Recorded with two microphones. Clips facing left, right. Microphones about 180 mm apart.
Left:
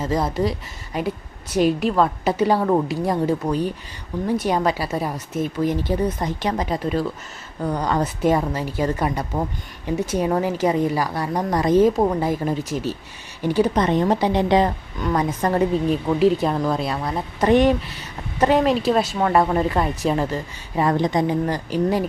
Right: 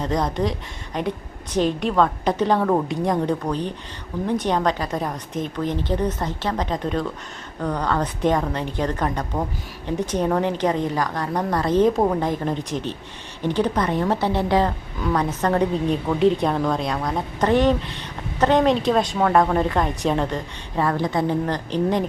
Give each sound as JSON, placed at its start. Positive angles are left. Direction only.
{"t": 0.0, "sound": "a woman's voice", "side_deg": 5}
{"t": 13.7, "sound": "a woman's voice", "side_deg": 20}
{"t": 20.8, "sound": "a woman's voice", "side_deg": 15}